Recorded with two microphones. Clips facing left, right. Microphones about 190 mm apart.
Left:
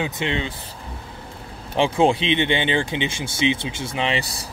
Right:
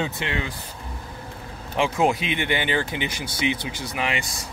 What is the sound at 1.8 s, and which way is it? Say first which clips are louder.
Speech: left 3 dB; 30° left (ahead or behind).